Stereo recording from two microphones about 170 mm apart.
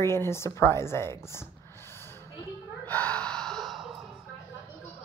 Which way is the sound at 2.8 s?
10° left (ahead or behind).